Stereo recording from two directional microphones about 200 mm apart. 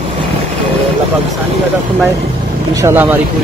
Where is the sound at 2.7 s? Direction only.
15° right (ahead or behind).